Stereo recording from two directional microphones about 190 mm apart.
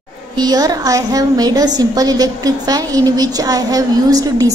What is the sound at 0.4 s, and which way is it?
A woman's voice, 20° right (ahead or behind).